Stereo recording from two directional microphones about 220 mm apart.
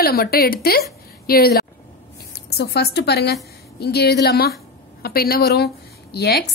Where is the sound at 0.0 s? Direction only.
45° left (ahead or behind).